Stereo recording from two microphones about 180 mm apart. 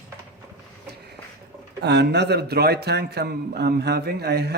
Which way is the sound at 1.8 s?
70° right (ahead or behind).